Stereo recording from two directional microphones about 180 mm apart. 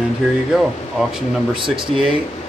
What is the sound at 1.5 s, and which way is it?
Speech, 25° right (ahead or behind).